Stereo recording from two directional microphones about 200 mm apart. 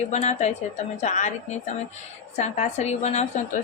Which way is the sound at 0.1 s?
35° left (ahead or behind).